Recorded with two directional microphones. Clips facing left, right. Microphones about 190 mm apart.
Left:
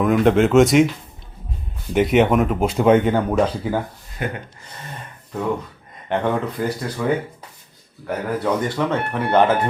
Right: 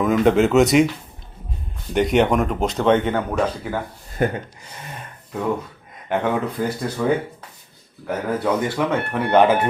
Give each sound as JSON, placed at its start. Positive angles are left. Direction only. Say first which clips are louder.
{"t": 0.0, "sound": "speech", "louder": "left 1 dB", "side_deg": 0}
{"t": 1.9, "sound": "speech", "louder": "left 1 dB", "side_deg": 0}
{"t": 4.2, "sound": "speech", "louder": "right 6 dB", "side_deg": -45}
{"t": 6.1, "sound": "speech", "louder": "even", "side_deg": -5}
{"t": 8.0, "sound": "speech", "louder": "even", "side_deg": -10}